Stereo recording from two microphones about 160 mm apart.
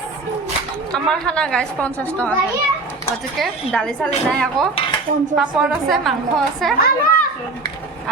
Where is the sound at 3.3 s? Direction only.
Centre (ahead or behind).